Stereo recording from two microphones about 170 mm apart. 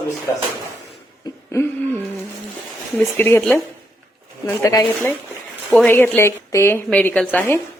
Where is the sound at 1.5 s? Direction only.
10° left (ahead or behind).